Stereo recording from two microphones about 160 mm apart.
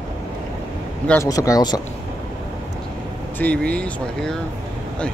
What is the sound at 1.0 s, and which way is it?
Speech, 15° left (ahead or behind).